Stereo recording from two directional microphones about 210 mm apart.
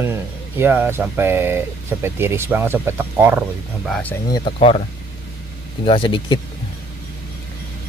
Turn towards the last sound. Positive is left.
turn(degrees=25)  # may be behind; listen again after turning